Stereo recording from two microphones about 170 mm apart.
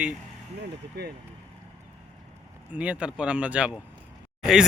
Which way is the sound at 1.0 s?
75° right (ahead or behind).